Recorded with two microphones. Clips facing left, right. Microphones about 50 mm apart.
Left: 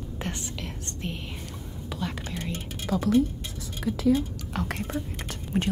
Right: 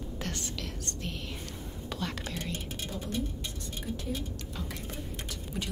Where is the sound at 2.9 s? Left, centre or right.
Left.